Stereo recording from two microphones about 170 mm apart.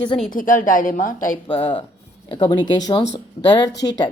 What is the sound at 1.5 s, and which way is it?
A woman's voice, 30° left (ahead or behind).